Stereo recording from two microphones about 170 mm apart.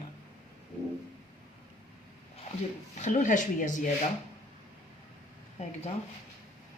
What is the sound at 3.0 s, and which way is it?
Speech, 45° left (ahead or behind).